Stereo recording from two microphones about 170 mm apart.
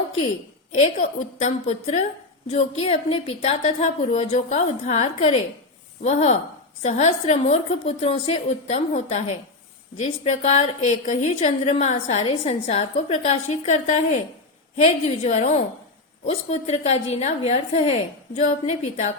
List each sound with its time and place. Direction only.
0.7 s a woman's voice: 45° left (ahead or behind)